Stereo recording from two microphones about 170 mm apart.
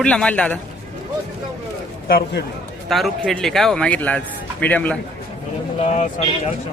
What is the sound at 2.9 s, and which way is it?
A man's voice, centre (ahead or behind).